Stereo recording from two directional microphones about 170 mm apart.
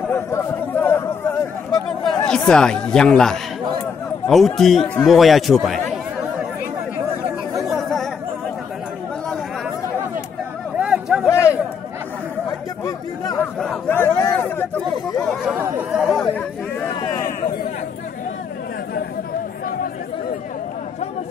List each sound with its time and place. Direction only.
0.1 s chatter: 15° left (ahead or behind)
1.7 s speech: centre (ahead or behind)
7.6 s chatter: centre (ahead or behind)
10.8 s a sound: 5° right (ahead or behind)
11.2 s a sound: 15° left (ahead or behind)
12.4 s chatter: 20° left (ahead or behind)
15.4 s chatter: 10° right (ahead or behind)